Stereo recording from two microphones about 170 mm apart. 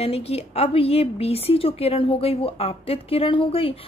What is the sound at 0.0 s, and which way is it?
A woman's voice, 35° left (ahead or behind).